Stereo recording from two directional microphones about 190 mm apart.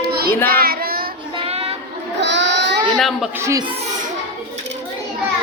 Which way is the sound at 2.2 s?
70° right (ahead or behind).